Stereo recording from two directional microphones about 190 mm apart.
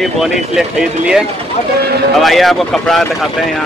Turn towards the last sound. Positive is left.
turn(degrees=0)  # may be behind; listen again after turning